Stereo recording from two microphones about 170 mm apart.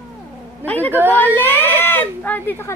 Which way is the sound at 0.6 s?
10° left (ahead or behind).